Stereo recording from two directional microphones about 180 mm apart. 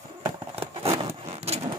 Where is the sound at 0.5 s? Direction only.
35° right (ahead or behind).